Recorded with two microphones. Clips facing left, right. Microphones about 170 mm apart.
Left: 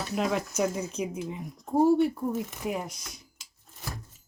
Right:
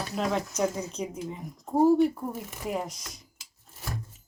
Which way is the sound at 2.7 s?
Centre (ahead or behind).